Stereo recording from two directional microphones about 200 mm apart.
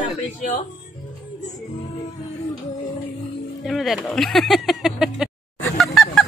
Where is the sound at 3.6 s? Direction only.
Centre (ahead or behind).